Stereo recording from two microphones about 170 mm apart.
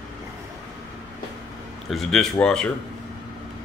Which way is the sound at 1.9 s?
5° left (ahead or behind).